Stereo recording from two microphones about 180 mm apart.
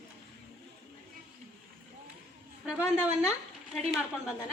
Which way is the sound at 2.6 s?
5° right (ahead or behind).